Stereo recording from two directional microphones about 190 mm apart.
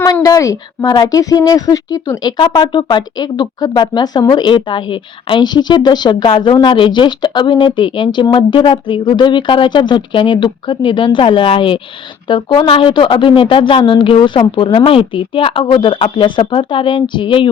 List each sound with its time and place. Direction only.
0.0 s a woman's voice: 20° left (ahead or behind)